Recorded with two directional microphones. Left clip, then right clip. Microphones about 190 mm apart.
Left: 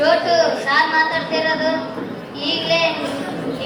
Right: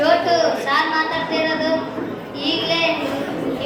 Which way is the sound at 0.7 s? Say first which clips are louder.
Left 3 dB; 25° right (ahead or behind).